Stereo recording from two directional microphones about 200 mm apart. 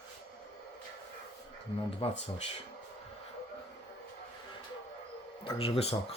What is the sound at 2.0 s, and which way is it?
Speech, 30° left (ahead or behind).